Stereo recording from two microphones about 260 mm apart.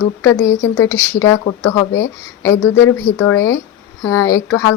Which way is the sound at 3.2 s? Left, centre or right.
Centre.